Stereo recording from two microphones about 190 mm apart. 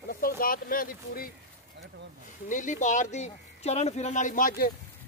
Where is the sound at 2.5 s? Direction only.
40° left (ahead or behind).